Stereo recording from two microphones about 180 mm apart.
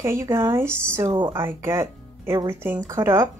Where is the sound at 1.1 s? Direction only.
25° right (ahead or behind).